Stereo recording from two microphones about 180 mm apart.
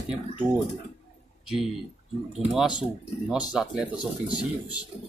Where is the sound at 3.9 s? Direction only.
25° left (ahead or behind).